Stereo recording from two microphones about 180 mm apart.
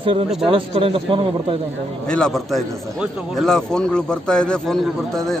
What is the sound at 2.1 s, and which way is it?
A man's voice, 5° left (ahead or behind).